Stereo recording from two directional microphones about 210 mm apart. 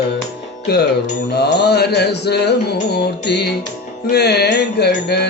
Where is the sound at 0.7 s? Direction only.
50° left (ahead or behind).